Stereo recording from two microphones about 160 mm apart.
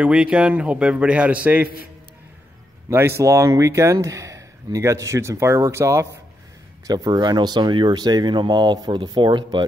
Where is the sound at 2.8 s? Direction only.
15° right (ahead or behind).